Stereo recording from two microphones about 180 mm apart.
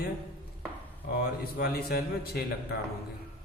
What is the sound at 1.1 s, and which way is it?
A man's voice, 60° left (ahead or behind).